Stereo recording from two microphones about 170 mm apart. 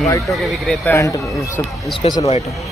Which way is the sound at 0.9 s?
20° left (ahead or behind).